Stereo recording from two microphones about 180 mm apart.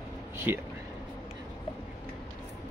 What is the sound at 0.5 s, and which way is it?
Speech, 10° right (ahead or behind).